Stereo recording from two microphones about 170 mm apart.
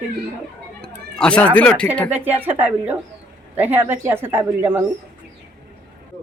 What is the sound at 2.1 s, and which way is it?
Speech, 10° right (ahead or behind).